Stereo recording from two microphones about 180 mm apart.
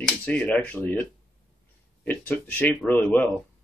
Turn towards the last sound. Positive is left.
turn(degrees=10)  # may be behind; listen again after turning